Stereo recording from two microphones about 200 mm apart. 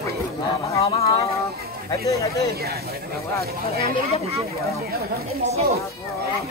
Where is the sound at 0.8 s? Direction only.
30° left (ahead or behind).